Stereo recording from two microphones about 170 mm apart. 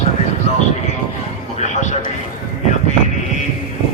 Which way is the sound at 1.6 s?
45° left (ahead or behind).